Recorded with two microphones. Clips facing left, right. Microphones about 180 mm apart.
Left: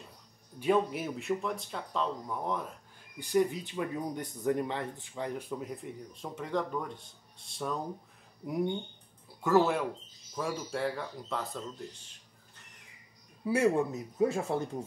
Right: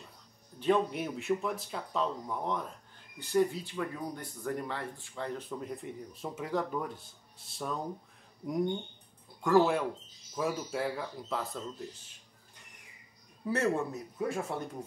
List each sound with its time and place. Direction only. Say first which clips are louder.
0.6 s speech: even; 5° left (ahead or behind)
3.2 s speech: even; 15° left (ahead or behind); by 11.6 s centre (ahead or behind)
13.4 s speech: left 3 dB; 10° left (ahead or behind)